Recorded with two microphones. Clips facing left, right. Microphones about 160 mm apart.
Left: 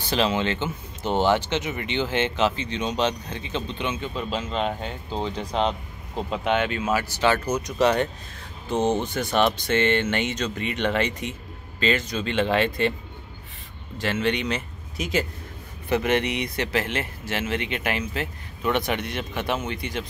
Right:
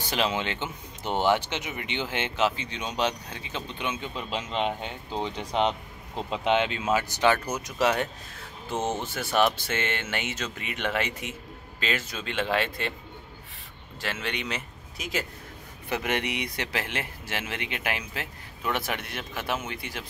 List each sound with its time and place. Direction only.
0.1 s speech: 10° right (ahead or behind)
13.9 s speech: centre (ahead or behind)